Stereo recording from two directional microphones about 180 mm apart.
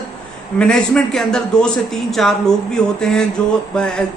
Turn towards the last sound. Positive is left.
turn(degrees=5)  # may be behind; listen again after turning